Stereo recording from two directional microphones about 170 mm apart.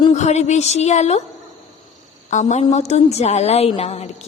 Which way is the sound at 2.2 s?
45° left (ahead or behind).